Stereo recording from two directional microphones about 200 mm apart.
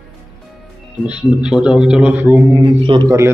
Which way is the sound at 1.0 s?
5° right (ahead or behind).